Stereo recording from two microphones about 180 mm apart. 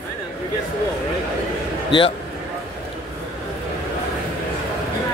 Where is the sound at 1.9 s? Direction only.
30° left (ahead or behind).